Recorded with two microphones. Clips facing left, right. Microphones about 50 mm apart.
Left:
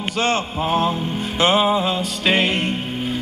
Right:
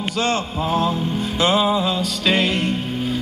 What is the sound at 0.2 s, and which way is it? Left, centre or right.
Music, left.